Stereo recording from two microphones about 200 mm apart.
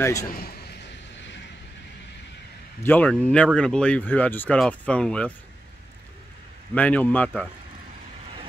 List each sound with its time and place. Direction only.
0.0 s a man's voice: 15° left (ahead or behind)
0.3 s a man's voice: 50° left (ahead or behind)
2.8 s speech: 10° left (ahead or behind)
6.7 s a man's voice: 5° left (ahead or behind)